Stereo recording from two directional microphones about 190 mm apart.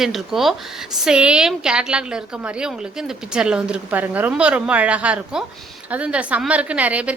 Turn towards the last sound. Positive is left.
turn(degrees=-5)  # may be behind; listen again after turning